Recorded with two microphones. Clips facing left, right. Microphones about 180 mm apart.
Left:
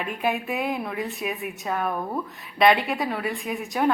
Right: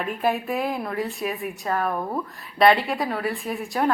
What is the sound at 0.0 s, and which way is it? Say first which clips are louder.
A woman's voice: right 2 dB; centre (ahead or behind).